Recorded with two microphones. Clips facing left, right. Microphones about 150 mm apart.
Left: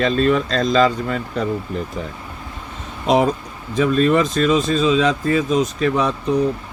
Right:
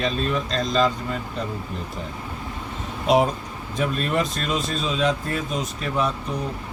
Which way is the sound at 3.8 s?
90° left.